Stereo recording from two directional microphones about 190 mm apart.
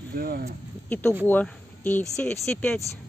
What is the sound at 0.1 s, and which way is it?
Speech, 55° right (ahead or behind).